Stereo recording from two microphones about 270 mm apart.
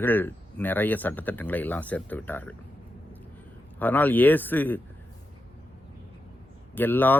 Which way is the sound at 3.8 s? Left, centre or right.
Centre.